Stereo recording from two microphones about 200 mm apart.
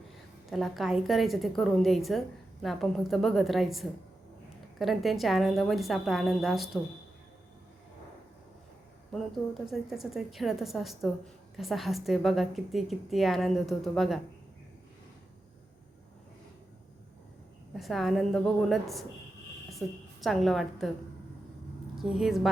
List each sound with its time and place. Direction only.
0.5 s a woman's voice: centre (ahead or behind)
9.1 s a woman's voice: centre (ahead or behind)
17.7 s a woman's voice: centre (ahead or behind)
21.9 s a woman's voice: 5° right (ahead or behind)